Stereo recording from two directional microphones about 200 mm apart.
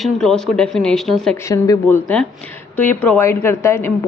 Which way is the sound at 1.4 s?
15° left (ahead or behind).